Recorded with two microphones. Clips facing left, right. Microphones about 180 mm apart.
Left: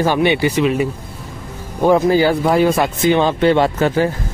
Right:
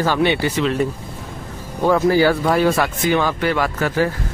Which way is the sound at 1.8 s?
20° left (ahead or behind).